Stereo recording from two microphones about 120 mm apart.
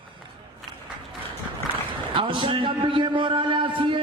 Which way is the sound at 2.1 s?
45° right (ahead or behind).